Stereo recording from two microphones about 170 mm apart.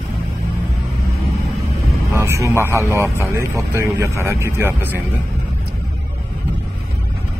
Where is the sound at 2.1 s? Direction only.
15° right (ahead or behind).